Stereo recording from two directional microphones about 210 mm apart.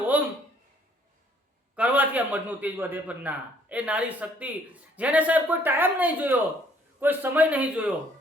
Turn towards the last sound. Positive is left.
turn(degrees=-5)  # may be behind; listen again after turning